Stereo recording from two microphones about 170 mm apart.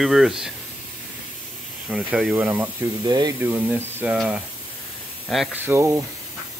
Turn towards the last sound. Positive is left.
turn(degrees=-15)  # may be behind; listen again after turning